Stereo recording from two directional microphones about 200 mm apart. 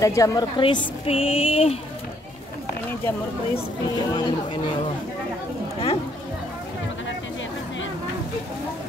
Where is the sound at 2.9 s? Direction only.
10° left (ahead or behind).